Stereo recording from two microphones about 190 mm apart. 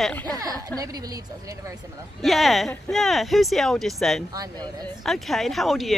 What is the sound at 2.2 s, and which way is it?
Speech, centre (ahead or behind).